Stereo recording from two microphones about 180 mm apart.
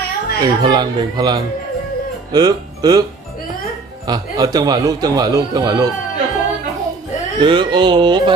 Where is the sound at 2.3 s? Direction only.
20° right (ahead or behind).